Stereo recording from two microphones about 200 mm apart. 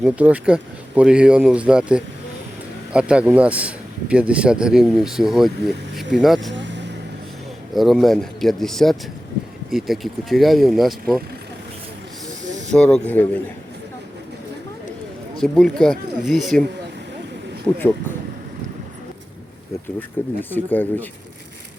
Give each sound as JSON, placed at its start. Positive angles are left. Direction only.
{"t": 0.0, "sound": "speech", "side_deg": -5}
{"t": 6.5, "sound": "vehicle", "side_deg": -65}
{"t": 7.7, "sound": "speech", "side_deg": 0}
{"t": 12.5, "sound": "hiss", "side_deg": -35}
{"t": 12.7, "sound": "speech", "side_deg": 5}
{"t": 15.4, "sound": "speech", "side_deg": 0}
{"t": 17.7, "sound": "speech", "side_deg": 5}
{"t": 20.2, "sound": "speech", "side_deg": 10}